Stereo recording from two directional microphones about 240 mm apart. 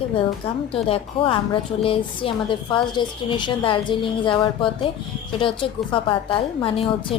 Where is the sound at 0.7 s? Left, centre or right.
Left.